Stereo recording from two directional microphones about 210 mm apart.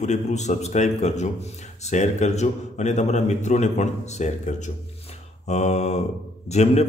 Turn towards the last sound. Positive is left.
turn(degrees=30)  # may be behind; listen again after turning